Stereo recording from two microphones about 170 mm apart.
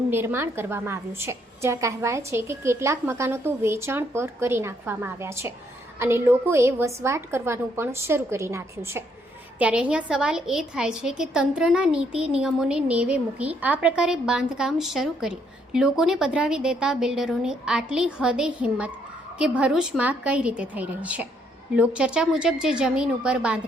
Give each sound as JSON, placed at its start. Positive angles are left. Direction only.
{"t": 0.1, "sound": "a woman's voice", "side_deg": -15}